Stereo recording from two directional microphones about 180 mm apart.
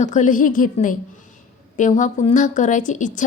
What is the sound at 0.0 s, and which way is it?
A woman's voice, 45° left (ahead or behind).